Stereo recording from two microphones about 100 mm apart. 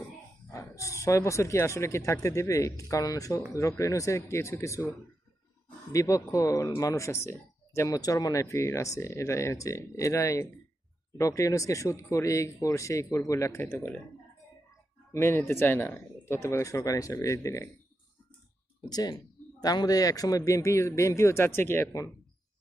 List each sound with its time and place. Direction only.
0.5 s speech: 30° left (ahead or behind)
5.9 s speech: 30° left (ahead or behind)
15.1 s speech: 25° left (ahead or behind)
18.9 s speech: 40° left (ahead or behind); by 21.8 s 20° left (ahead or behind)